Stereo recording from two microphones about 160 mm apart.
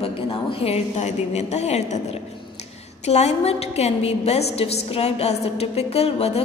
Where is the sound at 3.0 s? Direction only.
45° left (ahead or behind).